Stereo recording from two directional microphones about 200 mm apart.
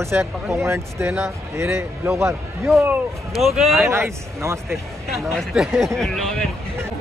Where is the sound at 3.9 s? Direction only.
15° right (ahead or behind).